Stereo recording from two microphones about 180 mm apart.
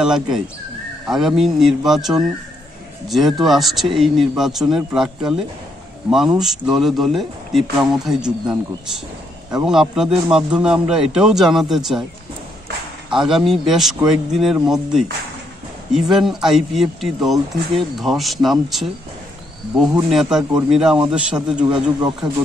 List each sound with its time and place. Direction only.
0.0 s speech: 5° right (ahead or behind)
9.7 s speech: 5° right (ahead or behind)
13.1 s speech: centre (ahead or behind)
20.1 s speech: 5° right (ahead or behind)
21.7 s speech: 25° right (ahead or behind)